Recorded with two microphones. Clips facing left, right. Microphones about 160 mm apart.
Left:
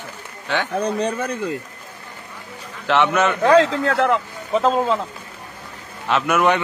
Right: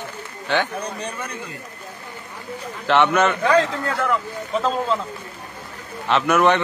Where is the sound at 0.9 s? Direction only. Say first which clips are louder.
Left 8 dB; 30° left (ahead or behind).